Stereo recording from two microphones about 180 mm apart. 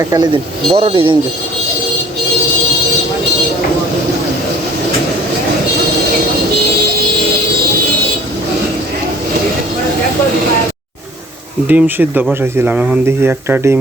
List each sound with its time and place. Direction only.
0.0 s speech: 20° right (ahead or behind)
0.7 s speech: 35° right (ahead or behind)
11.7 s speech: 10° right (ahead or behind)